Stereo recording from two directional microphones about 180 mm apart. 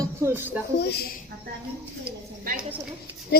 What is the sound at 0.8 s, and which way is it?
Speech, 60° left (ahead or behind).